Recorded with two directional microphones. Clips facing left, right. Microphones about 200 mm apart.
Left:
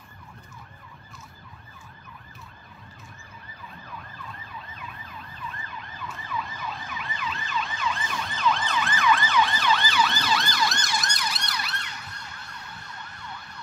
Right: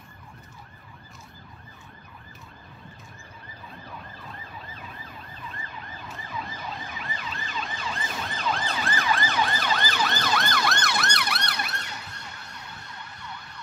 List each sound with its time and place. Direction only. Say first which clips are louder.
7.0 s emergency vehicle: left 2 dB; 40° right (ahead or behind); by 11.7 s 60° right (ahead or behind)